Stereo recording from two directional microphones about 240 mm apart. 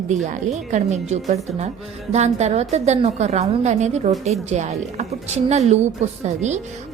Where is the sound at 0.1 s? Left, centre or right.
Right.